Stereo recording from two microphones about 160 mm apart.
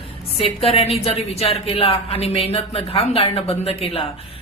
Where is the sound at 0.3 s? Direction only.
35° left (ahead or behind).